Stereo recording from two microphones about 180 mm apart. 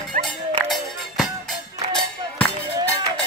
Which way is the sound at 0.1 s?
45° right (ahead or behind).